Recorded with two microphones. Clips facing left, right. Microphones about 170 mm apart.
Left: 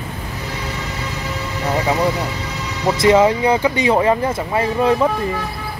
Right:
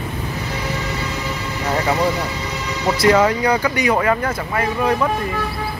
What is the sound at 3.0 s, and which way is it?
Speech, 25° left (ahead or behind).